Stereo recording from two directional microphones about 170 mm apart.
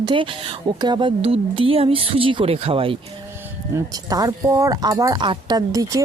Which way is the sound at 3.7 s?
20° right (ahead or behind).